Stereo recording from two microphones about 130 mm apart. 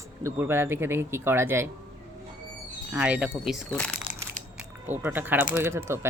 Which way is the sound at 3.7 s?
10° left (ahead or behind).